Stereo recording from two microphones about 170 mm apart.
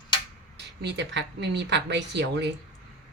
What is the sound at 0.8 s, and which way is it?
A woman's voice, 90° right.